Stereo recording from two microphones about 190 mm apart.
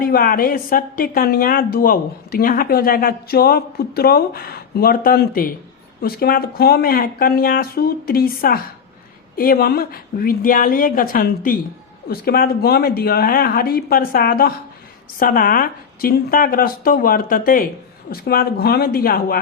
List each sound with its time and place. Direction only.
0.0 s a woman's voice: 50° left (ahead or behind)